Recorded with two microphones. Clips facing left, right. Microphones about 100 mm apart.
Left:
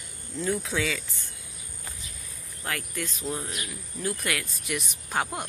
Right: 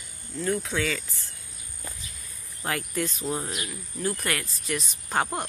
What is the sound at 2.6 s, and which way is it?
Speech, 5° right (ahead or behind).